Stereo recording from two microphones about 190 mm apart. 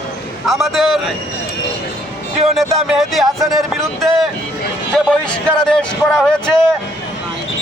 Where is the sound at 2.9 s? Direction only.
Centre (ahead or behind).